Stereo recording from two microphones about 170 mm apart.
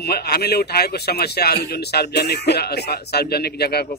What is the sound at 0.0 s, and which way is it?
Speech, 70° left (ahead or behind).